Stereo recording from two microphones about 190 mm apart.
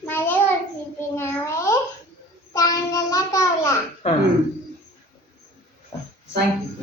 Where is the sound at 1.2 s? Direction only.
15° left (ahead or behind).